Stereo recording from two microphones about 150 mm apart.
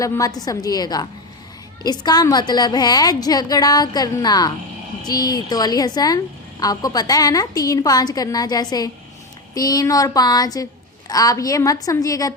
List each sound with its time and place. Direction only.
0.0 s a woman's voice: 25° left (ahead or behind)